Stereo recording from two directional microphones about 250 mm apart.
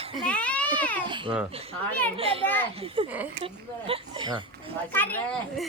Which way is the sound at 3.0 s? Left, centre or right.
Right.